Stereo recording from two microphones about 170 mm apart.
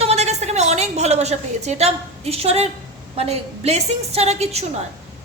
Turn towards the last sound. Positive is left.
turn(degrees=-40)  # may be behind; listen again after turning